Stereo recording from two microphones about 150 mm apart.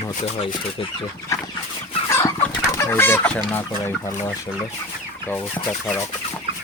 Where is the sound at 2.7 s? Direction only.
15° left (ahead or behind).